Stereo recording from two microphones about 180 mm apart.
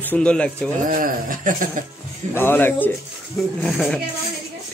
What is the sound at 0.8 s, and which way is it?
Speech, 50° right (ahead or behind).